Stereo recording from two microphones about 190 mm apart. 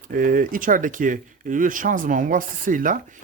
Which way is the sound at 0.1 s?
45° right (ahead or behind).